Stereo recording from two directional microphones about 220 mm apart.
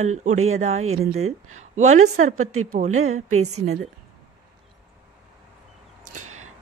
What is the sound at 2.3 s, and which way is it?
A woman's voice, 70° right (ahead or behind).